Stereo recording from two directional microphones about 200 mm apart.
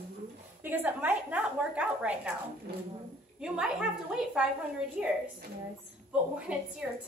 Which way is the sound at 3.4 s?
5° right (ahead or behind).